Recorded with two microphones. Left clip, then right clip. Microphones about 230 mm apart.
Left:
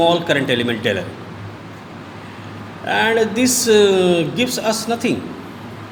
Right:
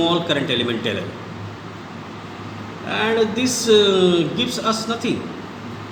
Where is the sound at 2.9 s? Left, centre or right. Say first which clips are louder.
Left 3 dB; left.